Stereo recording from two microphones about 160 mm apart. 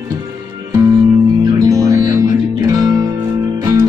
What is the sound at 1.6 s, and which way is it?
Music, 20° right (ahead or behind).